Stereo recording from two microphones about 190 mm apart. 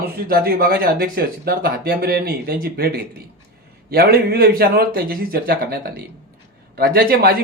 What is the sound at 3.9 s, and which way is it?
Speech, 55° right (ahead or behind).